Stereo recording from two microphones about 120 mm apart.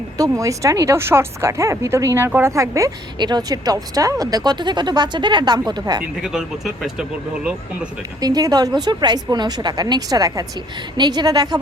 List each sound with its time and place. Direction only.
0.2 s a woman's voice: 25° right (ahead or behind)
6.0 s speech: 5° right (ahead or behind)
8.2 s speech: 30° right (ahead or behind)